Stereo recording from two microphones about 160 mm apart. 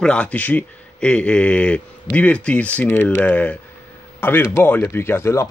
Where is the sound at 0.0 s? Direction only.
5° left (ahead or behind).